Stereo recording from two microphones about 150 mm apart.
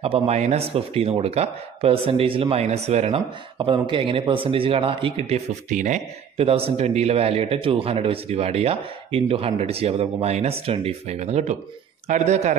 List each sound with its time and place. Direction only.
0.0 s a man's voice: 45° right (ahead or behind)